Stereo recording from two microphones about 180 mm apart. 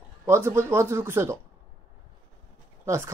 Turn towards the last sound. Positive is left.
turn(degrees=-15)  # may be behind; listen again after turning